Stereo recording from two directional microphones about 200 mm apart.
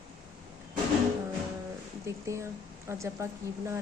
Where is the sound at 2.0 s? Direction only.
15° right (ahead or behind).